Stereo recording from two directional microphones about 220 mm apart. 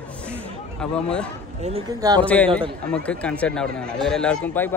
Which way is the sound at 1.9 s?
15° right (ahead or behind).